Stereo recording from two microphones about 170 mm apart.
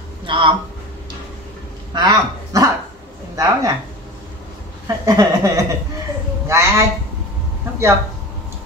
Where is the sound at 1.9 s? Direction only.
25° right (ahead or behind).